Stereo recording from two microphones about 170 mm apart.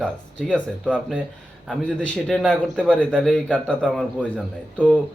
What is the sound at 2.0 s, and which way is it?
A man's voice, 5° left (ahead or behind).